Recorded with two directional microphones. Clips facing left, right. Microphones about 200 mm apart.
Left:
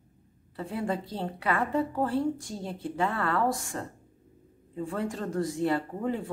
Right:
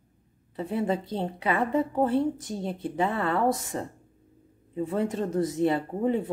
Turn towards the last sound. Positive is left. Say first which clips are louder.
# right 5 dB
turn(degrees=-20)  # may be behind; listen again after turning